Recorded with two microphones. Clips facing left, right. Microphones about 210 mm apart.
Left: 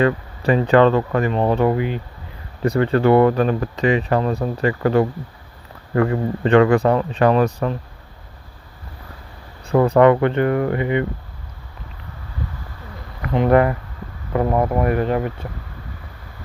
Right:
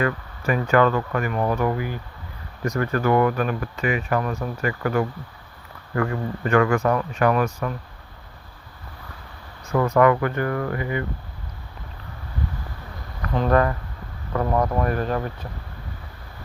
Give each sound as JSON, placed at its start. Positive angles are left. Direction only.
{"t": 0.0, "sound": "speech", "side_deg": 30}
{"t": 9.6, "sound": "speech", "side_deg": 35}
{"t": 13.2, "sound": "speech", "side_deg": 20}